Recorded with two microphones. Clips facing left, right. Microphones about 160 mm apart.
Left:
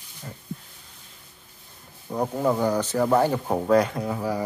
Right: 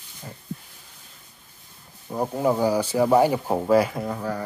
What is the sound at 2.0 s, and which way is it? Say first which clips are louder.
Speech: right 1 dB; 5° right (ahead or behind).